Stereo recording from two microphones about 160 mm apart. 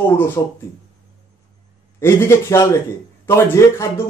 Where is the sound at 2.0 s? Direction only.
15° left (ahead or behind).